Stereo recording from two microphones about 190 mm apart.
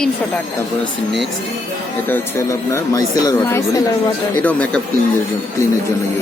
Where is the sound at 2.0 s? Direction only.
15° left (ahead or behind).